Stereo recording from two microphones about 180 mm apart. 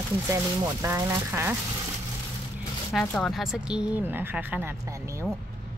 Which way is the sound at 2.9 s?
5° left (ahead or behind).